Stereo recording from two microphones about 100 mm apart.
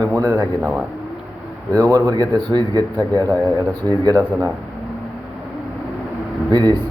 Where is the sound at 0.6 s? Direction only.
5° right (ahead or behind).